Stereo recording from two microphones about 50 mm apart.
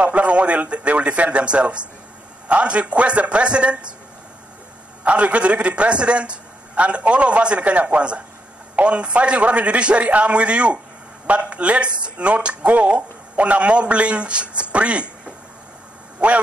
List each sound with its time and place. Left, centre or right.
0.0 s speech: right
5.0 s speech: right